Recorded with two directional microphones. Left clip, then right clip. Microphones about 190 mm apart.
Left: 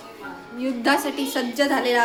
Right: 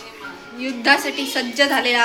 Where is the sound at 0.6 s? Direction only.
20° left (ahead or behind).